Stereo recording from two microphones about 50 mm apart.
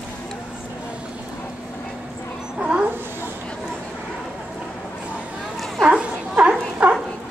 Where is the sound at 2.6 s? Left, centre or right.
Right.